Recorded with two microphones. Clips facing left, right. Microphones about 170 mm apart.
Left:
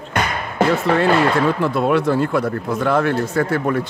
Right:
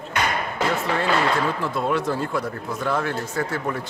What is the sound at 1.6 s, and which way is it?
A man's voice, 65° left (ahead or behind).